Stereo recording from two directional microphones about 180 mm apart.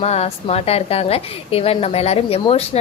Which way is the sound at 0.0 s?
35° left (ahead or behind).